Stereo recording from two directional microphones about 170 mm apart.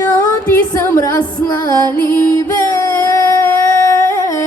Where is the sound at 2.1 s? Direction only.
15° left (ahead or behind).